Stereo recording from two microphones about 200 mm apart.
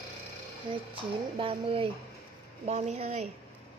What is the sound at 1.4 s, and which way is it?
A woman's voice, 25° right (ahead or behind).